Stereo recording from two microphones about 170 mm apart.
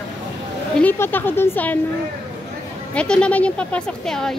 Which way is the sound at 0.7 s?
10° left (ahead or behind).